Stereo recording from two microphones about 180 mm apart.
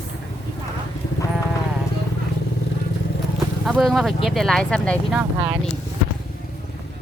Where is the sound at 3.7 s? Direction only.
Centre (ahead or behind).